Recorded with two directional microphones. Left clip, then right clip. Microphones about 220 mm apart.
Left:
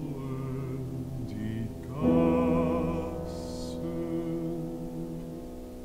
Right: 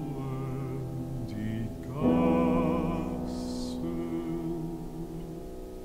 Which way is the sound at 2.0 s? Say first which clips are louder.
Left 1 dB; 15° right (ahead or behind).